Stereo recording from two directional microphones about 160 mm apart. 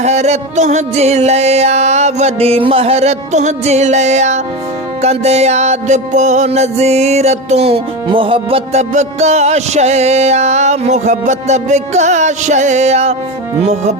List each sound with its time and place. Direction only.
0.0 s music: 45° right (ahead or behind)